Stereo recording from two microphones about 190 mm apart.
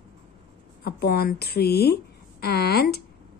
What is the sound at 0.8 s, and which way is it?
A woman's voice, 55° left (ahead or behind).